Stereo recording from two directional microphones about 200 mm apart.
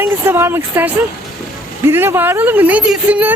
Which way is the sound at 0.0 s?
10° right (ahead or behind).